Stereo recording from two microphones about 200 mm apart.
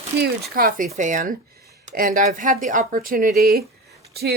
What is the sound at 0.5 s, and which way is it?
Speech, 45° right (ahead or behind).